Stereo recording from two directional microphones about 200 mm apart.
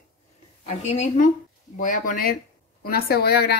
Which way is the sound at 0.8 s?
35° left (ahead or behind).